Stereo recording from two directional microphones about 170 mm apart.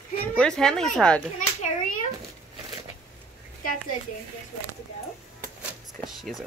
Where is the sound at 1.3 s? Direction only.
50° left (ahead or behind).